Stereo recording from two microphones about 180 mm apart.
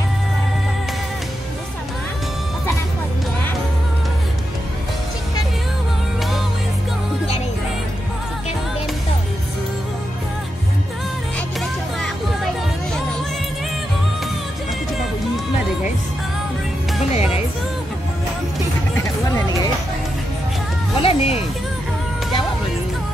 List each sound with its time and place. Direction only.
21.0 s music: 30° left (ahead or behind)